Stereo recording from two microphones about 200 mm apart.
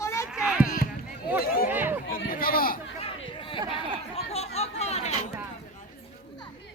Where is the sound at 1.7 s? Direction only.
10° right (ahead or behind).